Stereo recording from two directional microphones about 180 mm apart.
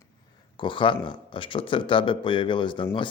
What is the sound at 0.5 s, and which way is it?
Speech, 25° left (ahead or behind).